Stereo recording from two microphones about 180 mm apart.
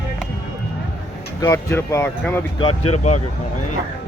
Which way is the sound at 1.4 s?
15° left (ahead or behind).